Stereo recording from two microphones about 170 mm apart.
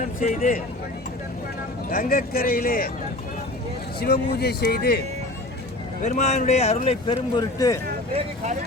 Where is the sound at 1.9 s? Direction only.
55° left (ahead or behind).